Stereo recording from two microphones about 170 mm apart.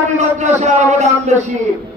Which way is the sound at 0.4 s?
45° right (ahead or behind).